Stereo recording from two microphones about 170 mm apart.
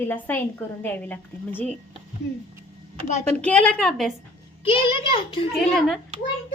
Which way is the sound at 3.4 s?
5° left (ahead or behind).